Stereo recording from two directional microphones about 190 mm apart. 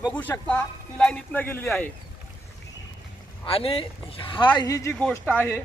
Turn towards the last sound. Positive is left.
turn(degrees=10)  # may be behind; listen again after turning